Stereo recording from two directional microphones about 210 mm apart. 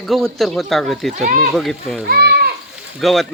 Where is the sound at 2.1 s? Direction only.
50° right (ahead or behind).